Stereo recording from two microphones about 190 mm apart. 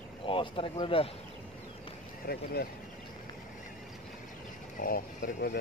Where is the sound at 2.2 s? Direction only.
55° left (ahead or behind).